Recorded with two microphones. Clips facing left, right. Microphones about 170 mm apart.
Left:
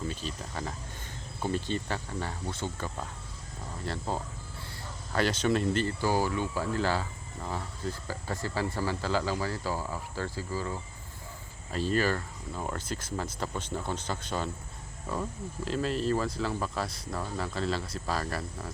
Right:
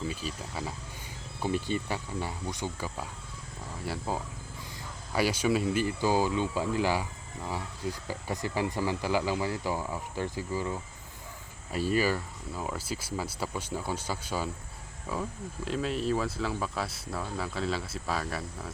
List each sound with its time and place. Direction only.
0.1 s speech: 10° right (ahead or behind)